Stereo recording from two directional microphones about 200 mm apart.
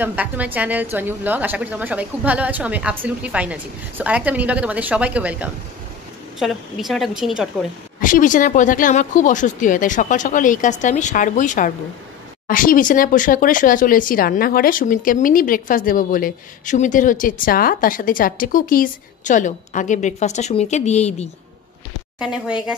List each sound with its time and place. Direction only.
0.0 s a woman's voice: 5° right (ahead or behind)
8.0 s speech: 40° left (ahead or behind)